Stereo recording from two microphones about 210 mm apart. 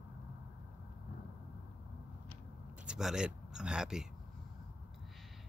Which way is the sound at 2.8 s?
Centre (ahead or behind).